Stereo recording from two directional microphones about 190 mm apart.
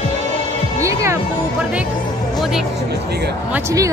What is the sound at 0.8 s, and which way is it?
Speech, 15° right (ahead or behind).